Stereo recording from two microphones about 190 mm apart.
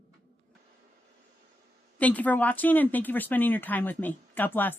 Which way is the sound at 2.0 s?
10° left (ahead or behind).